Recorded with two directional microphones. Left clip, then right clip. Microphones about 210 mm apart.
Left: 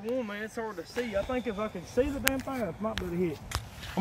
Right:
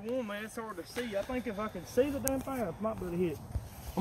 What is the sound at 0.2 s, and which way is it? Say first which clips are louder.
Speech: left 4 dB; 50° left (ahead or behind).